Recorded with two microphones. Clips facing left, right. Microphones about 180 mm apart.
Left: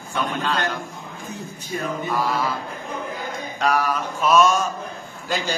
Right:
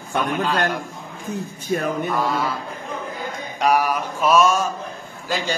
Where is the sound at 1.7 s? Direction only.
60° right (ahead or behind).